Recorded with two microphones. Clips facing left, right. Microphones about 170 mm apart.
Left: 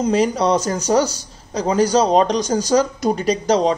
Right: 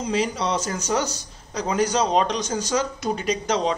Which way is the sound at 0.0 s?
45° left (ahead or behind).